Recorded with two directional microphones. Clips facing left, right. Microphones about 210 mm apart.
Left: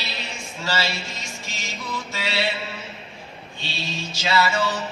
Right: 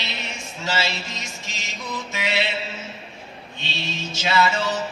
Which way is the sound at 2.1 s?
20° right (ahead or behind).